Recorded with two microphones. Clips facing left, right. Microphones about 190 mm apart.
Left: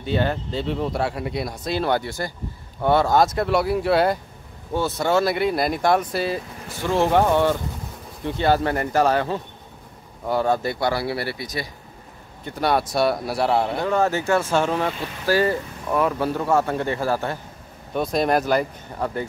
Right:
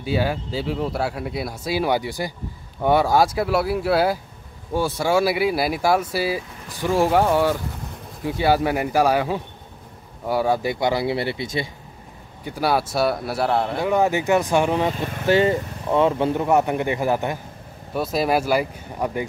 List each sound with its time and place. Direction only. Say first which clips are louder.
0.0 s speech: even; 5° right (ahead or behind); by 11.7 s 25° right (ahead or behind)
12.4 s speech: even; 5° right (ahead or behind)
13.8 s speech: right 5 dB; 15° right (ahead or behind)
17.9 s speech: even; 5° right (ahead or behind)